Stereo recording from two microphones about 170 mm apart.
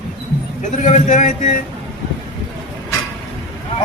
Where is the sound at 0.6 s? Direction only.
45° left (ahead or behind).